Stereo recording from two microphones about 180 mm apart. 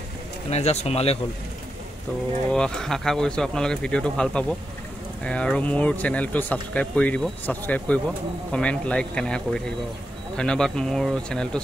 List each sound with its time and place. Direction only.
0.5 s speech: 35° left (ahead or behind)
2.5 s speech: 5° left (ahead or behind)